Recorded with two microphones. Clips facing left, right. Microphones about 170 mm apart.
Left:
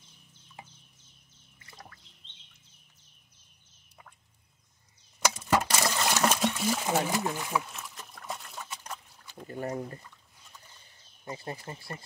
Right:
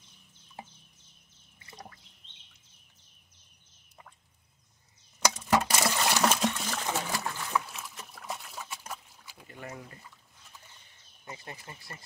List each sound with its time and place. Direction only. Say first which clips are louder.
1.6 s drip: right 3 dB; 20° right (ahead or behind)
5.5 s water: right 1 dB; 5° right (ahead or behind)
6.2 s trickle: left 1 dB; 5° right (ahead or behind)
6.6 s a sound: left 5 dB; 10° left (ahead or behind)
7.1 s speech: left 4 dB; 20° left (ahead or behind)
7.6 s trickle: even; centre (ahead or behind)
9.5 s speech: left 9 dB; 40° left (ahead or behind)
11.2 s speech: left 6 dB; 35° left (ahead or behind)